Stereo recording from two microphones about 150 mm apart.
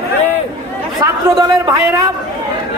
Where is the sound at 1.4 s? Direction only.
20° right (ahead or behind).